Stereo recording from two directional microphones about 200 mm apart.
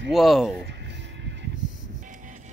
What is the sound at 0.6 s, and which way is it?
Music, 60° right (ahead or behind).